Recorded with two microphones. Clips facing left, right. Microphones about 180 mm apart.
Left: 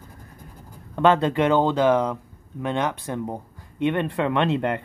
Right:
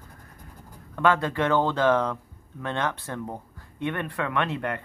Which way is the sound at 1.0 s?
25° left (ahead or behind).